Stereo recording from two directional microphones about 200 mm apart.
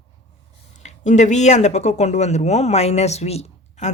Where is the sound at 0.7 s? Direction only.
35° left (ahead or behind).